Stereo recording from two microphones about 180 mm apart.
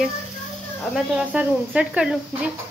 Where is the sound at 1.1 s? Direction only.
5° right (ahead or behind).